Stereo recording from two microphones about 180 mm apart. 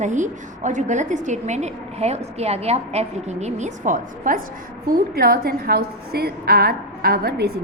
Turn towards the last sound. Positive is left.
turn(degrees=-60)  # may be behind; listen again after turning